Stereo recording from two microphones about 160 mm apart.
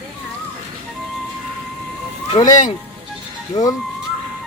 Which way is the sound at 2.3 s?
40° left (ahead or behind).